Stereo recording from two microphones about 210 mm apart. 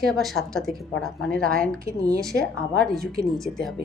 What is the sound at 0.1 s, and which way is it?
A woman's voice, centre (ahead or behind).